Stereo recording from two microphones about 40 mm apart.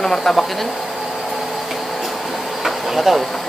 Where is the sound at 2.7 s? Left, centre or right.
Centre.